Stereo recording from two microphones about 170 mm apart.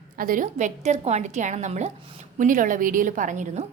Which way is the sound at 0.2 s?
55° right (ahead or behind).